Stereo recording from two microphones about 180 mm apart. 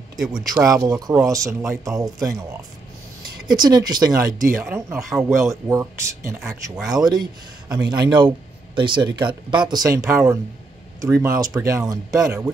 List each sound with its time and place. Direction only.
0.2 s speech: centre (ahead or behind)
0.6 s speech: 20° right (ahead or behind)
3.4 s speech: 25° right (ahead or behind)
6.8 s speech: 5° right (ahead or behind)
7.1 s speech: 20° right (ahead or behind)